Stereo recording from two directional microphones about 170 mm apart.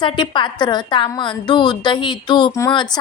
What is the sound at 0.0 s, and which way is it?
A woman's voice, 30° left (ahead or behind).